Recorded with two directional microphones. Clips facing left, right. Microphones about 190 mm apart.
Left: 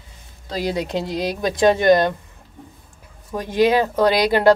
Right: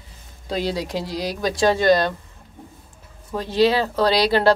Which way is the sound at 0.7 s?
20° left (ahead or behind).